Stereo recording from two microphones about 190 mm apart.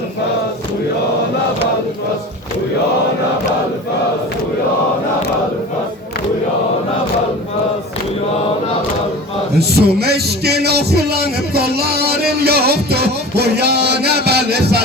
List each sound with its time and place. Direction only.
9.6 s a man's voice: 55° right (ahead or behind)